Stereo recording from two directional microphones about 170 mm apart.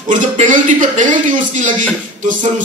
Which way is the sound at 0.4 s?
50° right (ahead or behind).